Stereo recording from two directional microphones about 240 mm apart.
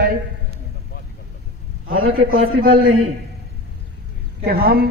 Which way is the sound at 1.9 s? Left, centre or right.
Right.